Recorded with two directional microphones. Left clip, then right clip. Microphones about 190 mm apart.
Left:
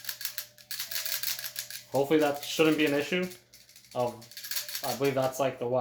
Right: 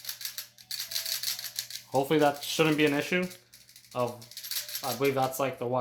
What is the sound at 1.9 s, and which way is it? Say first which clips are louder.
Speech: right 1 dB; 55° right (ahead or behind).